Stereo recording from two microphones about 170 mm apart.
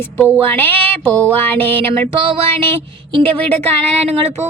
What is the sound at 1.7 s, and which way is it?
Music, 30° right (ahead or behind).